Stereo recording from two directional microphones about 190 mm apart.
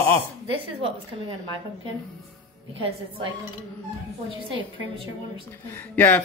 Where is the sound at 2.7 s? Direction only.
30° right (ahead or behind).